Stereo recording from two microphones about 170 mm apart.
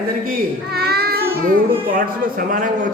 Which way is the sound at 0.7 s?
65° right (ahead or behind).